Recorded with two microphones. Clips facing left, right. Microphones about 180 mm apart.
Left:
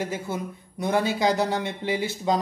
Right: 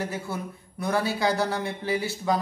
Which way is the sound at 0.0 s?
20° left (ahead or behind).